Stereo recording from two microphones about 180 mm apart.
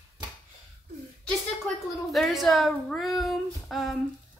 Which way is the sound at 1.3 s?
Centre (ahead or behind).